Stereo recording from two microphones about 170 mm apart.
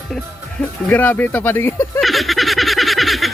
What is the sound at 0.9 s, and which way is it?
Speech, 10° left (ahead or behind).